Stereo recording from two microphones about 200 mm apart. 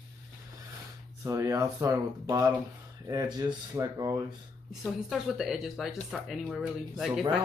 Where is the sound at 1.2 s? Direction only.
15° right (ahead or behind).